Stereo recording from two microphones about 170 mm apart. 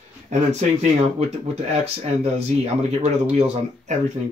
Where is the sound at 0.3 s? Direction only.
40° right (ahead or behind).